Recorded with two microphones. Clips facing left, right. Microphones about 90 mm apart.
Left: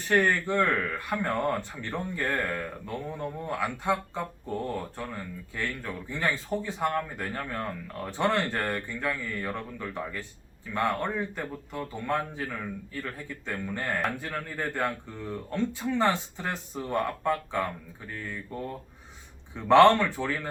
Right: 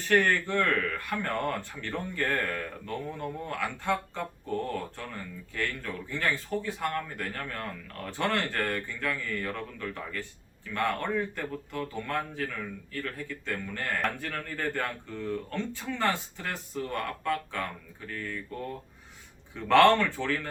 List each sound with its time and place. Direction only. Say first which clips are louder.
0.1 s speech: left 1 dB; 15° left (ahead or behind)